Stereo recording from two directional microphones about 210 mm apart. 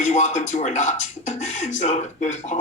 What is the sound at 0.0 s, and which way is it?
Speech, 35° left (ahead or behind).